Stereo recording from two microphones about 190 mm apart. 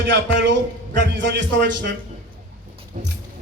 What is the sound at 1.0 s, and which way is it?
Speech, 70° right (ahead or behind).